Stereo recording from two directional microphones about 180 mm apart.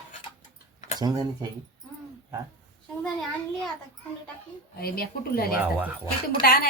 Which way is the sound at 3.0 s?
Centre (ahead or behind).